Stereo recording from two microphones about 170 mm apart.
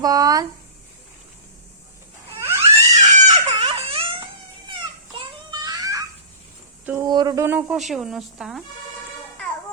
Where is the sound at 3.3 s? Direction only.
35° right (ahead or behind).